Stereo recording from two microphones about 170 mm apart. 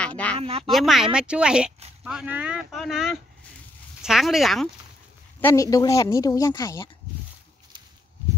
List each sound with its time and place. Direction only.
0.0 s a sound: 5° left (ahead or behind)
0.4 s a woman's voice: 35° right (ahead or behind)
0.7 s speech: centre (ahead or behind)
5.4 s a woman's voice: 20° left (ahead or behind)